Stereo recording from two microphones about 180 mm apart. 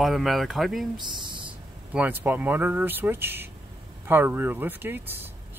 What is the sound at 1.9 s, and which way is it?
Speech, 10° right (ahead or behind).